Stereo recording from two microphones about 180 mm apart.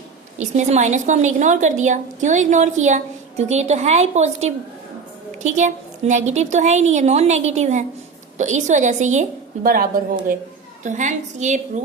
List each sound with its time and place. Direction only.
0.3 s a woman's voice: 40° right (ahead or behind)
9.6 s speech: 55° right (ahead or behind)
10.8 s a woman's voice: 45° right (ahead or behind)